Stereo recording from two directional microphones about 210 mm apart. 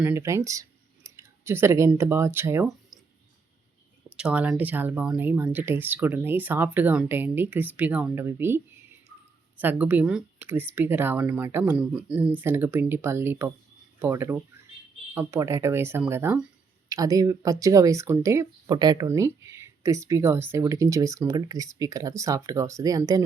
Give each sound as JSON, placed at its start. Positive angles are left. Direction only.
{"t": 0.0, "sound": "speech", "side_deg": -10}
{"t": 4.2, "sound": "speech", "side_deg": -5}